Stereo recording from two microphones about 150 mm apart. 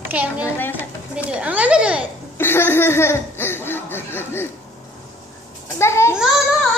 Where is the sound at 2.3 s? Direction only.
15° left (ahead or behind).